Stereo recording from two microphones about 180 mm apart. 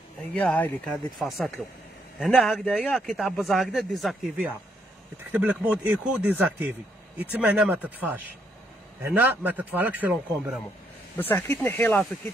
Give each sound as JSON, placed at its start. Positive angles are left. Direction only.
{"t": 0.3, "sound": "a man's voice", "side_deg": 5}
{"t": 11.1, "sound": "speech", "side_deg": 10}